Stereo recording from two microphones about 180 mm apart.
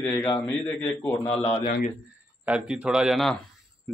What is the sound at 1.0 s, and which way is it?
Speech, 10° left (ahead or behind).